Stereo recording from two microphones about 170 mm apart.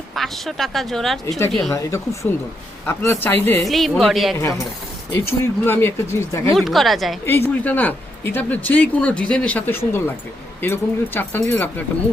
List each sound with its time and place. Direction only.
0.1 s speech: centre (ahead or behind)
1.7 s speech: 15° left (ahead or behind)
3.7 s speech: centre (ahead or behind)
4.4 s speech: 20° left (ahead or behind)
6.6 s speech: centre (ahead or behind)
7.3 s speech: 15° left (ahead or behind)